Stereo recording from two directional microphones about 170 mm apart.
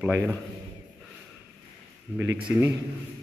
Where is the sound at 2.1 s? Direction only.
10° left (ahead or behind).